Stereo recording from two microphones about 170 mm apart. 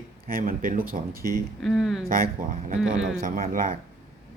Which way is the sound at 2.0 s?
55° right (ahead or behind).